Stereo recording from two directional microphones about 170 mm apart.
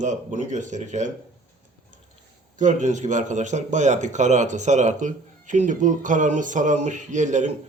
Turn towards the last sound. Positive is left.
turn(degrees=-45)  # may be behind; listen again after turning